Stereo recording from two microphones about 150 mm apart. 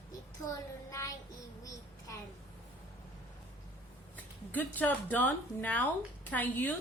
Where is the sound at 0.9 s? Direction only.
20° left (ahead or behind).